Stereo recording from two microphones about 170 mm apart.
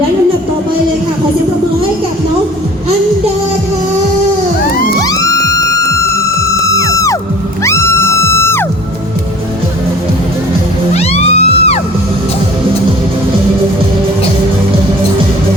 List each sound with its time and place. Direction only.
4.9 s music: 20° left (ahead or behind)
6.9 s music: 20° left (ahead or behind)
10.9 s music: 35° left (ahead or behind)